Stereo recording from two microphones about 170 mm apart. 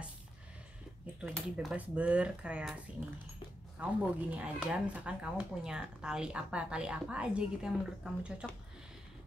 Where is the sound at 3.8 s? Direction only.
10° right (ahead or behind).